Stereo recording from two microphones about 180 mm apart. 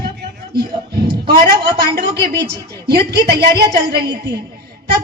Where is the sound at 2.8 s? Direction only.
65° right (ahead or behind).